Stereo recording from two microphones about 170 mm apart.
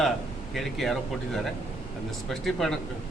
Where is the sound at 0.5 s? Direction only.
Centre (ahead or behind).